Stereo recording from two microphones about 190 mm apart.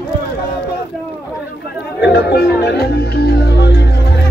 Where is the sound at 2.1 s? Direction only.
55° left (ahead or behind).